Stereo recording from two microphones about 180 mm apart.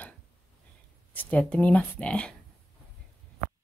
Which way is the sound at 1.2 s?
5° left (ahead or behind).